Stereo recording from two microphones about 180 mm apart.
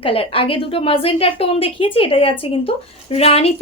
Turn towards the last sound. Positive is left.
turn(degrees=35)  # may be behind; listen again after turning